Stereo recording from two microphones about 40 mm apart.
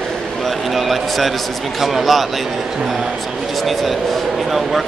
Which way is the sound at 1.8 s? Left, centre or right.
Centre.